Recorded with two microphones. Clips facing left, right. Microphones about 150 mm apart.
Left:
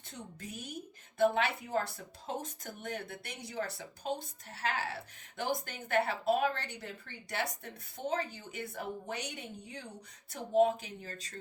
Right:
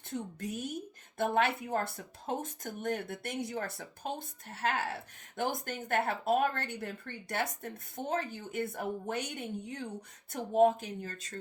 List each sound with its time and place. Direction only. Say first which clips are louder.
0.1 s speech: right 8 dB; 50° right (ahead or behind)